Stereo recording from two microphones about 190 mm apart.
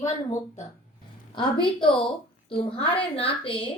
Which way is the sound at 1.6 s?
25° left (ahead or behind).